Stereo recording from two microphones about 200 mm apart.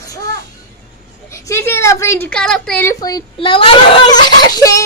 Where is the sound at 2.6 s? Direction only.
10° left (ahead or behind).